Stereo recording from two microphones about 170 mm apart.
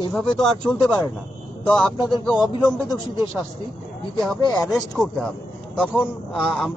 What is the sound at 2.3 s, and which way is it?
Speech, 25° left (ahead or behind).